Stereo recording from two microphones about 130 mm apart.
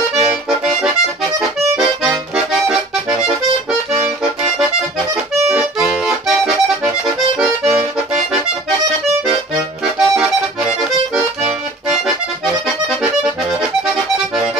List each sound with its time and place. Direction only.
0.1 s accordion: centre (ahead or behind)
5.5 s accordion: 5° right (ahead or behind)
9.9 s accordion: 5° right (ahead or behind)